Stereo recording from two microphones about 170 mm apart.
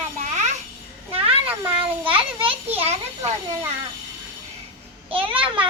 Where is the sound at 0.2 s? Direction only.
45° right (ahead or behind).